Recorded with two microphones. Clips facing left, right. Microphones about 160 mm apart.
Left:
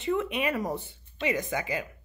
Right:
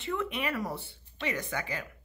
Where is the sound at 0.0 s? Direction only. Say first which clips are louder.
Left 5 dB; 20° left (ahead or behind).